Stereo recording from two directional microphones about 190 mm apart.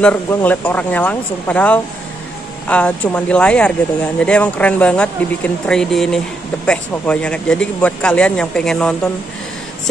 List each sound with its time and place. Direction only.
0.0 s speech: 10° left (ahead or behind)